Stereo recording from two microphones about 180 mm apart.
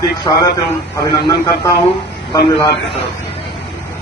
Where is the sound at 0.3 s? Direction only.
25° left (ahead or behind).